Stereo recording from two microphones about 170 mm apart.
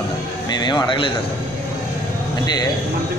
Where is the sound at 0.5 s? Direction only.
25° left (ahead or behind).